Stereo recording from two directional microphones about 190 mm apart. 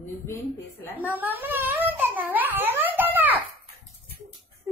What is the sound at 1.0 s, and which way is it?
Speech, 10° right (ahead or behind).